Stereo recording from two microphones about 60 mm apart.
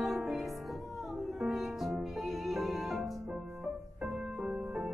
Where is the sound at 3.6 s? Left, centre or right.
Right.